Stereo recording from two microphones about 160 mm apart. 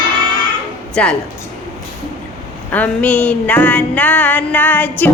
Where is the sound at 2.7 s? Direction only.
10° left (ahead or behind).